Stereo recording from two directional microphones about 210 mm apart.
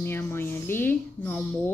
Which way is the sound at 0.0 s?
10° left (ahead or behind).